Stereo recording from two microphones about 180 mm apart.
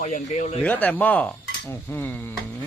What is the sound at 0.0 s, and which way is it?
Speech, 45° left (ahead or behind).